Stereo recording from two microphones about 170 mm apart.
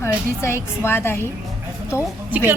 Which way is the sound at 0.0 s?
15° left (ahead or behind).